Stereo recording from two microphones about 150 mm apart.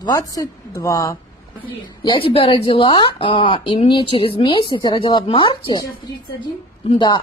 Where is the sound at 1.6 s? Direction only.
35° left (ahead or behind).